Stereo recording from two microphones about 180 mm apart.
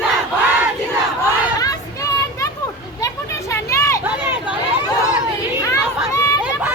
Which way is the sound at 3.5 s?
15° left (ahead or behind).